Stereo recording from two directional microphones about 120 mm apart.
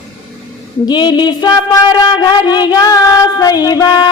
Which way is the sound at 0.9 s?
35° left (ahead or behind).